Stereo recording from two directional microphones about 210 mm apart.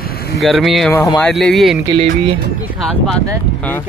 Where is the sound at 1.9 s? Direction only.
25° right (ahead or behind).